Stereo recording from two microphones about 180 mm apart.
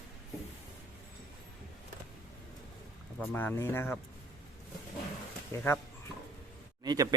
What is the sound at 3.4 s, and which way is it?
Speech, 10° left (ahead or behind).